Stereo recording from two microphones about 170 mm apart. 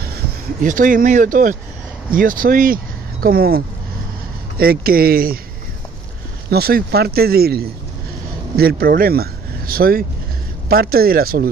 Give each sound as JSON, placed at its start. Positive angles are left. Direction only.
{"t": 0.6, "sound": "speech", "side_deg": -50}
{"t": 6.5, "sound": "speech", "side_deg": -65}